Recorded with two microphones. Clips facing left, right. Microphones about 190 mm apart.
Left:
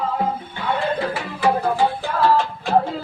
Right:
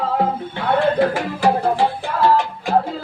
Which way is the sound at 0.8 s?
50° right (ahead or behind).